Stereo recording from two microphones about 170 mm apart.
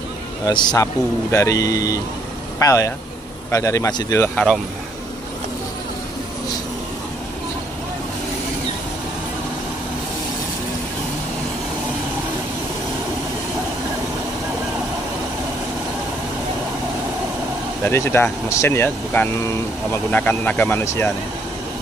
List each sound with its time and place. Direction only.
0.5 s speech: 25° left (ahead or behind)
17.8 s speech: 15° left (ahead or behind)